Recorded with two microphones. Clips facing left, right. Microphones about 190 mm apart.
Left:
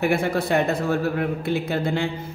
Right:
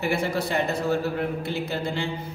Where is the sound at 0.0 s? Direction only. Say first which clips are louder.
Left 4 dB; 55° left (ahead or behind).